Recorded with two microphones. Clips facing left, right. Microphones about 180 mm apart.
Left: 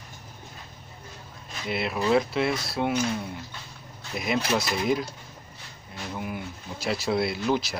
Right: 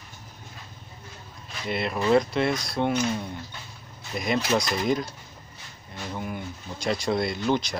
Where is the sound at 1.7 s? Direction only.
5° left (ahead or behind).